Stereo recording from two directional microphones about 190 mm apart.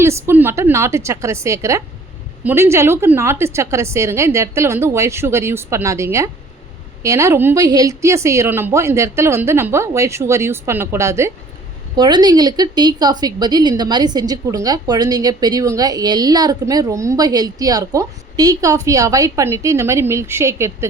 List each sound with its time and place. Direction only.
0.0 s a woman's voice: 15° right (ahead or behind)